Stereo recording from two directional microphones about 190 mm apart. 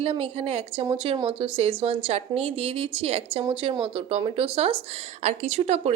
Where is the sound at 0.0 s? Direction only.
30° right (ahead or behind).